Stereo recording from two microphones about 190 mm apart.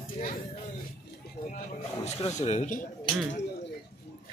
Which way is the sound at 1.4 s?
35° left (ahead or behind).